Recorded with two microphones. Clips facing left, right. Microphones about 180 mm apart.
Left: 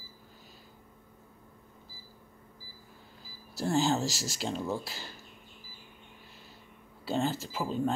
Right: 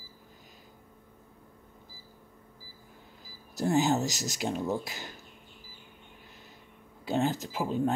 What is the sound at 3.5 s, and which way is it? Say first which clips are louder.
Speech: right 2 dB; 20° right (ahead or behind).